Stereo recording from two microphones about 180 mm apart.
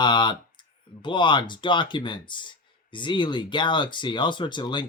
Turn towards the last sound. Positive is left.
turn(degrees=25)  # may be behind; listen again after turning